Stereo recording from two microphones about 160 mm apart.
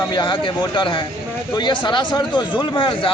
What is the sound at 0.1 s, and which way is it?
Speech, 30° left (ahead or behind).